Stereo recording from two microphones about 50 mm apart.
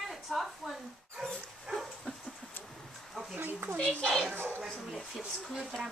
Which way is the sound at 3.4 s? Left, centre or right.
Right.